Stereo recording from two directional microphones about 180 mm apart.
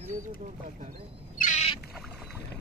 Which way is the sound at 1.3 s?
45° left (ahead or behind).